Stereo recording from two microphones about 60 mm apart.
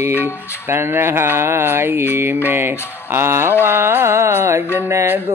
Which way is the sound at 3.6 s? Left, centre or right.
Right.